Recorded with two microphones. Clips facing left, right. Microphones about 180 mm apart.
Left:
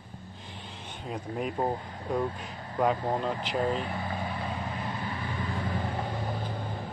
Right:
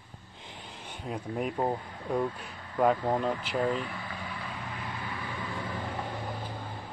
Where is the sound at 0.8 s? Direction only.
10° right (ahead or behind).